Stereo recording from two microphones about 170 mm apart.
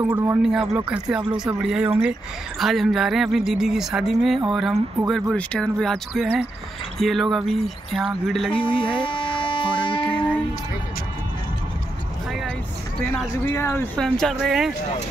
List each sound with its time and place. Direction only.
0.0 s a man's voice: 15° right (ahead or behind); by 8.6 s 5° left (ahead or behind)
9.0 s a sound: 30° left (ahead or behind)
10.0 s a sound: 5° left (ahead or behind)
12.3 s vehicle: centre (ahead or behind)
13.0 s speech: 10° left (ahead or behind)
13.9 s speech: 5° left (ahead or behind)